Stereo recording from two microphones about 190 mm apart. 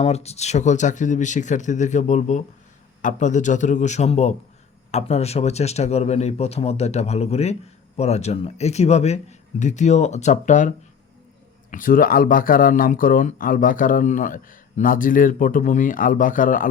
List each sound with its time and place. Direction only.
0.0 s speech: 35° left (ahead or behind)